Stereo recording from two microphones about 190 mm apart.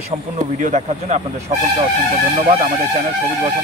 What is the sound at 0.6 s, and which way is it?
Speech, 40° right (ahead or behind).